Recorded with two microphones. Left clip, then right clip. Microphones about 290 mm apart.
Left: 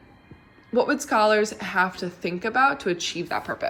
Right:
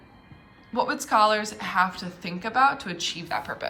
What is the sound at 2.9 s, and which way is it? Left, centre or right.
Speech, right.